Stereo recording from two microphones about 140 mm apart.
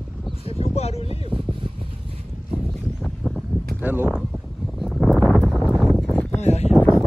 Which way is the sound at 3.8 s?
10° right (ahead or behind).